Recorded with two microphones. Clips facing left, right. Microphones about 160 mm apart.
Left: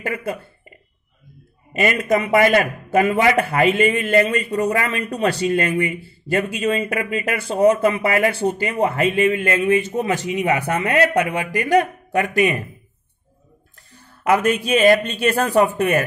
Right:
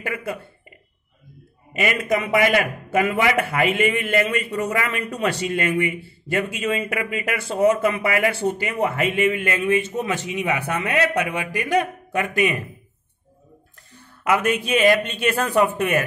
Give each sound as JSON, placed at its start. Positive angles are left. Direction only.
{"t": 0.0, "sound": "speech", "side_deg": 35}
{"t": 1.7, "sound": "a man's voice", "side_deg": 40}
{"t": 14.2, "sound": "a man's voice", "side_deg": 35}